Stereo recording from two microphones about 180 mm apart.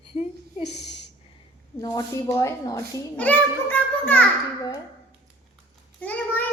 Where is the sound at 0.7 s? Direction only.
70° left (ahead or behind).